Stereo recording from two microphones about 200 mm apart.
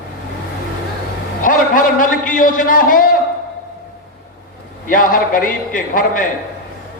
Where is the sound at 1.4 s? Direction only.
40° left (ahead or behind).